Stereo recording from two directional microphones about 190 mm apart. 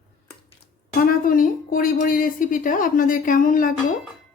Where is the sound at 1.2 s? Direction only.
45° left (ahead or behind).